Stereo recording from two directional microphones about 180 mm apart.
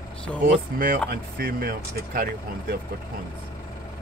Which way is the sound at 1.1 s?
55° right (ahead or behind).